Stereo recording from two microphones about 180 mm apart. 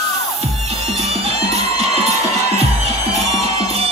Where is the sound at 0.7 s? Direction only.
35° right (ahead or behind).